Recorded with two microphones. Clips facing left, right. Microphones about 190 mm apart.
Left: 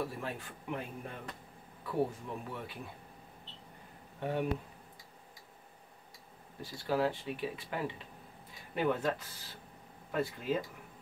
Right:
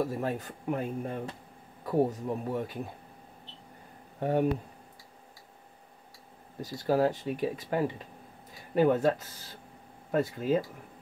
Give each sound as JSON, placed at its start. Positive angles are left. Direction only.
{"t": 0.0, "sound": "speech", "side_deg": -45}
{"t": 4.2, "sound": "speech", "side_deg": -40}
{"t": 6.6, "sound": "speech", "side_deg": -40}
{"t": 10.1, "sound": "speech", "side_deg": -40}